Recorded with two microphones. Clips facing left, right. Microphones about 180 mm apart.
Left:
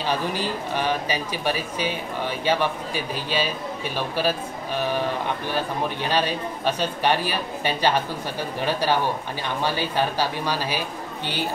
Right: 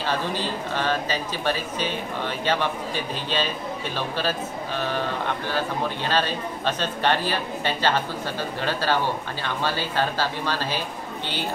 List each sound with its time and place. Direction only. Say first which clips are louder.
0.0 s speech: left 1 dB; 15° left (ahead or behind)
6.0 s speech: left 1 dB; 10° left (ahead or behind)